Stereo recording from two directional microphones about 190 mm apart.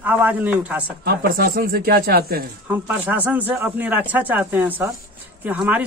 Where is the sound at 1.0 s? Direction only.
55° right (ahead or behind).